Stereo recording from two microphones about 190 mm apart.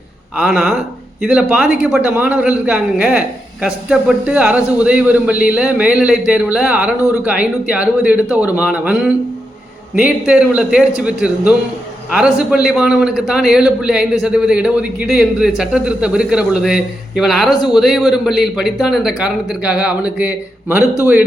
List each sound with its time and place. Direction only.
0.3 s a man's voice: centre (ahead or behind)
7.0 s speech: 15° left (ahead or behind)
7.3 s a man's voice: 5° right (ahead or behind)